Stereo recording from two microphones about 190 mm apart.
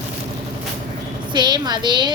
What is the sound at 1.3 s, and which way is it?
Speech, 20° right (ahead or behind).